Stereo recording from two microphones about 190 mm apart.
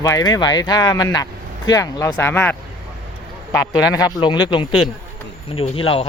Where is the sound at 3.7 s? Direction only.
20° left (ahead or behind).